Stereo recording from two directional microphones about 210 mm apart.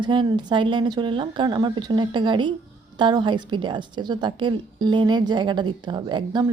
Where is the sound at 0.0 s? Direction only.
20° right (ahead or behind).